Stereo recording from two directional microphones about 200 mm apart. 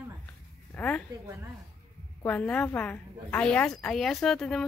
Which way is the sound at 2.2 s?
10° left (ahead or behind).